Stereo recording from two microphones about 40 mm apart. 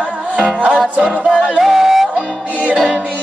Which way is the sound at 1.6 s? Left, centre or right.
Centre.